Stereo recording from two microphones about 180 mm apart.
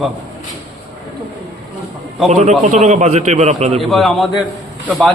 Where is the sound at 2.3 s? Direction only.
40° right (ahead or behind).